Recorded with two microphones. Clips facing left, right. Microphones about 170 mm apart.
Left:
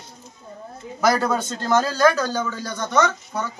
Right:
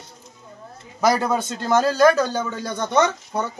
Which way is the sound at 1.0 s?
15° right (ahead or behind).